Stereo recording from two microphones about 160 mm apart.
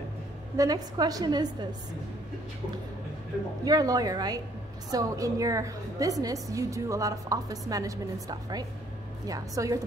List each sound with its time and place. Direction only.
0.6 s a woman's voice: 25° right (ahead or behind)
3.6 s a woman's voice: 25° right (ahead or behind)